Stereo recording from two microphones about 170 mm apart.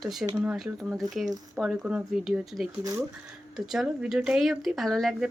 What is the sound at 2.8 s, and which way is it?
Speech, 20° right (ahead or behind).